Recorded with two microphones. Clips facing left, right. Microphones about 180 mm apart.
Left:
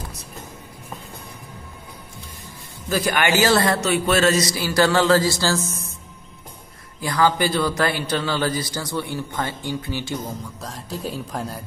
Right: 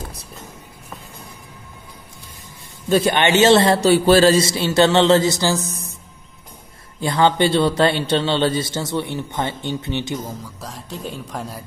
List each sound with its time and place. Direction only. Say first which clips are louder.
2.9 s a man's voice: right 5 dB; 25° right (ahead or behind)
7.0 s a man's voice: right 3 dB; 25° right (ahead or behind)
10.6 s speech: left 2 dB; centre (ahead or behind)